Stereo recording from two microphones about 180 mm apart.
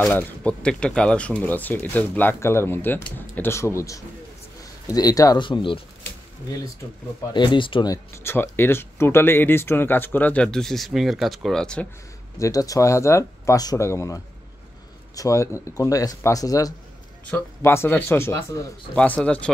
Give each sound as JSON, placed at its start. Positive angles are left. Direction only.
{"t": 0.0, "sound": "speech", "side_deg": 10}
{"t": 7.3, "sound": "speech", "side_deg": 25}
{"t": 12.4, "sound": "speech", "side_deg": 20}